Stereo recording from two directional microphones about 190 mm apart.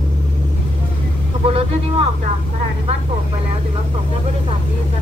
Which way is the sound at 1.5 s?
30° right (ahead or behind).